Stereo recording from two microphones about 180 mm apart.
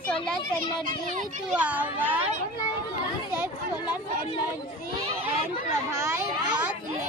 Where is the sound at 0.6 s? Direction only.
45° right (ahead or behind).